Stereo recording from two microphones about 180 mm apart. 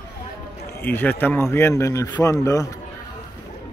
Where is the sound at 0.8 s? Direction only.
10° left (ahead or behind).